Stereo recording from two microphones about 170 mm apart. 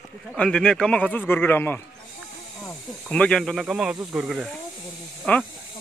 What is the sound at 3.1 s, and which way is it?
Speech, 5° left (ahead or behind).